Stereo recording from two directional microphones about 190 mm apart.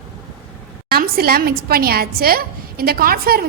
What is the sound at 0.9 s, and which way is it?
A woman's voice, 55° right (ahead or behind).